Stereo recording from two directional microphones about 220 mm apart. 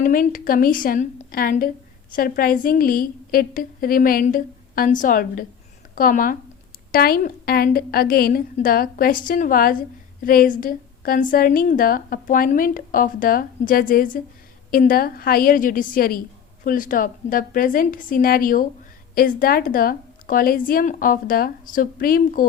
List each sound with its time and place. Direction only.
0.0 s a woman's voice: 40° left (ahead or behind)